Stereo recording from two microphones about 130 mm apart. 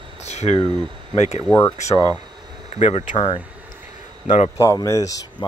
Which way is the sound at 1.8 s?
65° left (ahead or behind).